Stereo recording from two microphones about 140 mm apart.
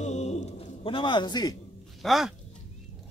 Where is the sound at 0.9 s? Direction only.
35° left (ahead or behind).